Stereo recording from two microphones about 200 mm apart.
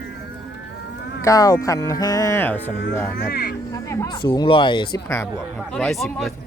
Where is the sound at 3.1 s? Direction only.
50° left (ahead or behind).